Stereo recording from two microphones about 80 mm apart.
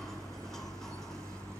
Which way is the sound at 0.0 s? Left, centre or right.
Centre.